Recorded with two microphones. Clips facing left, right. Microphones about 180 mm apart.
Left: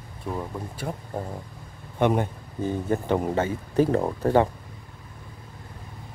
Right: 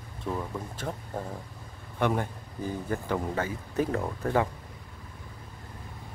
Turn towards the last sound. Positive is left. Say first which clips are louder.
# left 7 dB
turn(degrees=30)  # may be behind; listen again after turning